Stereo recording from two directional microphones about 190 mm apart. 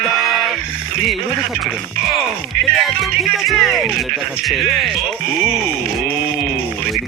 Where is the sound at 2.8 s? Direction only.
Centre (ahead or behind).